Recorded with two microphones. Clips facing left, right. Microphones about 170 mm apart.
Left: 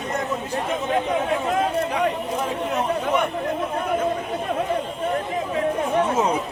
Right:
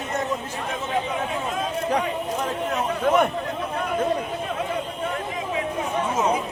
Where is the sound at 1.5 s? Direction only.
65° left (ahead or behind).